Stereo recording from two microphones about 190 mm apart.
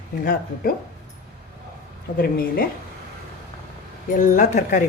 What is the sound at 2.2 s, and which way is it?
Speech, 50° left (ahead or behind).